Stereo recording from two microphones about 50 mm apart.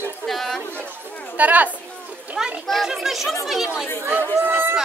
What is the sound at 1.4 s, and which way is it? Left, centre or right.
Speech, right.